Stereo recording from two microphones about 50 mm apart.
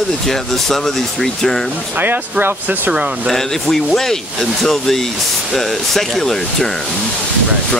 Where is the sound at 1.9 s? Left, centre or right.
Right.